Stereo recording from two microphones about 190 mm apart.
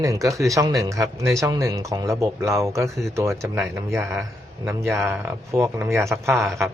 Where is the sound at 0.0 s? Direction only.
15° right (ahead or behind).